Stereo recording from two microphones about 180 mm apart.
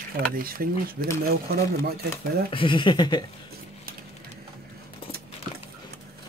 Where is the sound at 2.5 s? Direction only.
25° left (ahead or behind).